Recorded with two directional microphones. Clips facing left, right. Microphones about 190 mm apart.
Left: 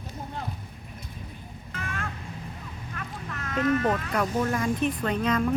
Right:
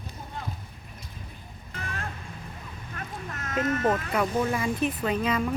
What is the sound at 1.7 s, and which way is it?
Music, 35° right (ahead or behind).